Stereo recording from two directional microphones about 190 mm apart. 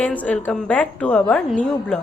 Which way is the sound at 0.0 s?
10° left (ahead or behind).